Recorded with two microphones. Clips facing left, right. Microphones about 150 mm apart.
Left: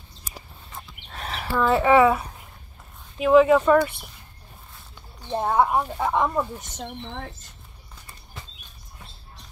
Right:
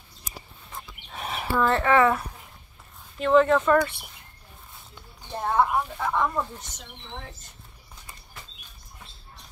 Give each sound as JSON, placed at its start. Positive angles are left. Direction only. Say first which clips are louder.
{"t": 1.1, "sound": "a sound", "louder": "even", "side_deg": -10}
{"t": 1.6, "sound": "speech", "louder": "left 3 dB", "side_deg": 10}
{"t": 5.4, "sound": "speech", "louder": "left 2 dB", "side_deg": 15}
{"t": 5.7, "sound": "speech", "louder": "left 3 dB", "side_deg": 35}
{"t": 5.9, "sound": "speech", "louder": "left 3 dB", "side_deg": 20}